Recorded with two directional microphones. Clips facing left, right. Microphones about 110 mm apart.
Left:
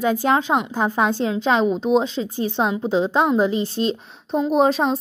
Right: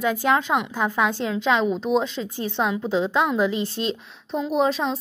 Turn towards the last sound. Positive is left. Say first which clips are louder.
# left 4 dB
turn(degrees=40)  # may be behind; listen again after turning